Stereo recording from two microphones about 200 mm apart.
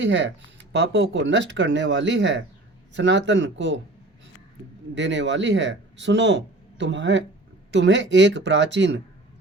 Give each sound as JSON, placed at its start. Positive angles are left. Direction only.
{"t": 0.0, "sound": "speech", "side_deg": -65}
{"t": 4.9, "sound": "speech", "side_deg": -65}